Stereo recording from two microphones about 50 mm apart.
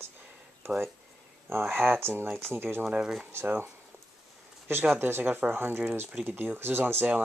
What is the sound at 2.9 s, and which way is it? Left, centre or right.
Speech, centre.